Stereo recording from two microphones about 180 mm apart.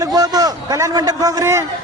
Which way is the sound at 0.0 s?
20° right (ahead or behind).